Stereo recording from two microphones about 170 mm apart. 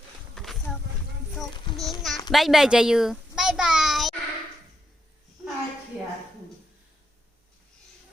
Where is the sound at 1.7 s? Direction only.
30° left (ahead or behind).